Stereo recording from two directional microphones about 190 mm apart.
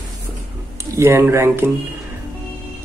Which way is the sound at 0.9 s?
15° right (ahead or behind).